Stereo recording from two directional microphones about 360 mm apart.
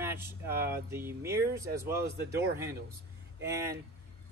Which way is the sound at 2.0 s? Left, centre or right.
Right.